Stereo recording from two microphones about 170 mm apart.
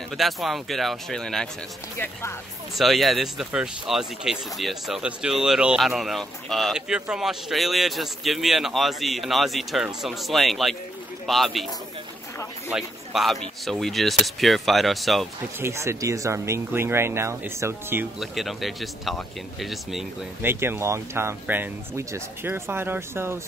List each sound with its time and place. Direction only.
0.2 s speech: centre (ahead or behind)
2.7 s speech: centre (ahead or behind)
12.7 s speech: centre (ahead or behind)
15.6 s speech: 15° right (ahead or behind)
18.2 s speech: centre (ahead or behind)
20.4 s speech: 15° right (ahead or behind)